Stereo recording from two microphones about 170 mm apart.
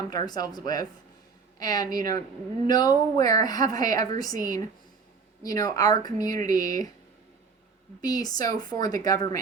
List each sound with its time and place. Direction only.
0.1 s speech: 25° left (ahead or behind)
8.0 s speech: 20° left (ahead or behind)